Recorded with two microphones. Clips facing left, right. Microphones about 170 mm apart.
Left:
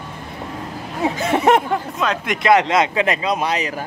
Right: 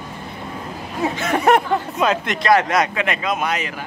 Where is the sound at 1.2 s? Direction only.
25° left (ahead or behind).